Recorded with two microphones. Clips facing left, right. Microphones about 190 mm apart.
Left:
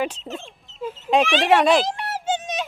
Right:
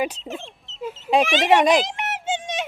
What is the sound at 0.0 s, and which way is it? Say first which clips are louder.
Speech: even; 10° right (ahead or behind).